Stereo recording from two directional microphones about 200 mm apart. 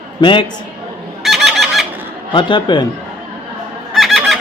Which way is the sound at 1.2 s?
Centre (ahead or behind).